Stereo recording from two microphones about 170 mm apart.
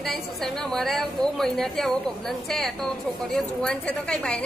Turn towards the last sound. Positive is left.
turn(degrees=5)  # may be behind; listen again after turning